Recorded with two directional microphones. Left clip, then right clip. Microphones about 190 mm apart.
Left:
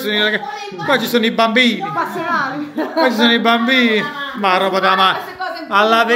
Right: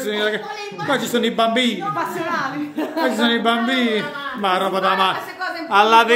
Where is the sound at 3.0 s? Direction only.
Centre (ahead or behind).